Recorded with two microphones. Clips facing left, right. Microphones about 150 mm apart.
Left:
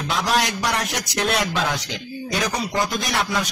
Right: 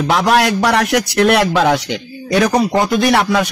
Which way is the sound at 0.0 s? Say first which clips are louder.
Right 9 dB; 65° right (ahead or behind).